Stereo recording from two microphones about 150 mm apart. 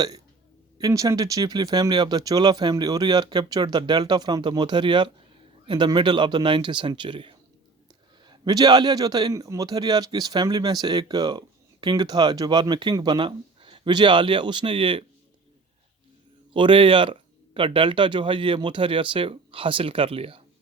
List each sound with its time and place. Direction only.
0.8 s a man's voice: 25° right (ahead or behind)
16.6 s speech: 35° right (ahead or behind)